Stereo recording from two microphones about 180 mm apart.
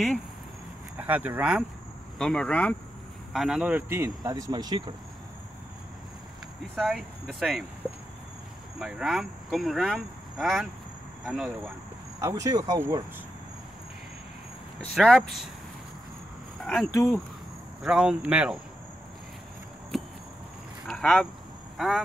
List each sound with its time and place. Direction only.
0.9 s speech: 10° right (ahead or behind)
2.1 s speech: 5° left (ahead or behind); by 4.9 s 25° right (ahead or behind)
6.7 s speech: centre (ahead or behind)
12.2 s speech: 15° right (ahead or behind)
15.0 s speech: centre (ahead or behind)
16.6 s speech: centre (ahead or behind)
20.8 s vehicle: centre (ahead or behind)
21.7 s speech: centre (ahead or behind)